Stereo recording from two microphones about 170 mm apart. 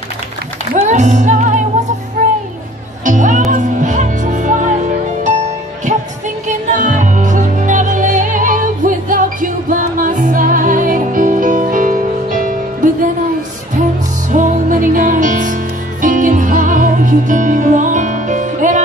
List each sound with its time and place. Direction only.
0.7 s music: 45° right (ahead or behind)
3.1 s music: 50° right (ahead or behind)
6.8 s music: 50° right (ahead or behind)
14.3 s music: 50° right (ahead or behind)